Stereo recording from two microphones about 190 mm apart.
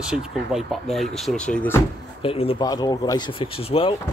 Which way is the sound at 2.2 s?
30° left (ahead or behind).